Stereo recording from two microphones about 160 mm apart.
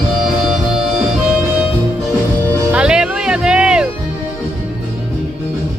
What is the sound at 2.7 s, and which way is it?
Music, 5° right (ahead or behind).